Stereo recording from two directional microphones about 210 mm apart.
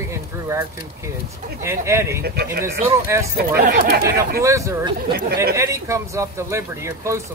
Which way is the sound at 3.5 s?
45° right (ahead or behind).